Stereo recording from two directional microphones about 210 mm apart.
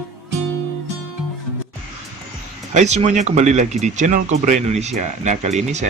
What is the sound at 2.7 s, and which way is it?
Speech, 35° right (ahead or behind).